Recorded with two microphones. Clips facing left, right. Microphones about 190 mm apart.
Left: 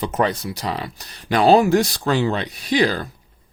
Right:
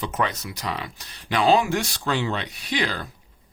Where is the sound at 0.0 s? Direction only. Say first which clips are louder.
Left 6 dB; 35° left (ahead or behind).